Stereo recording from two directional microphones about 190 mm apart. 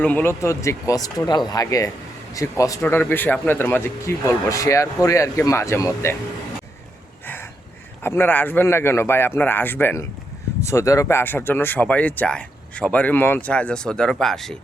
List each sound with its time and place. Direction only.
0.0 s speech: 10° left (ahead or behind)
8.0 s speech: 10° left (ahead or behind)